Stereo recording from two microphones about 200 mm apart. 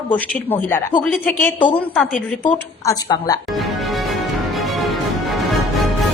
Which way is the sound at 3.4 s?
Centre (ahead or behind).